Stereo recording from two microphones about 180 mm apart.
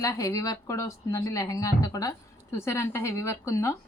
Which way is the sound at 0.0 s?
15° left (ahead or behind).